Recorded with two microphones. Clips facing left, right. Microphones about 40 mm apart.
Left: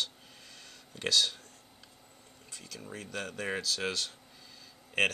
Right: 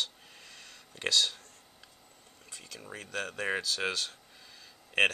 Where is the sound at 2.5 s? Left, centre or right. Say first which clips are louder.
Even; centre.